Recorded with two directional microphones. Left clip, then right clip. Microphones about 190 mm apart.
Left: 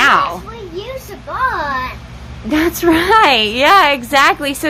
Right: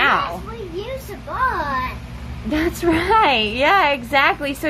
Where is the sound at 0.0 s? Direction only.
30° left (ahead or behind).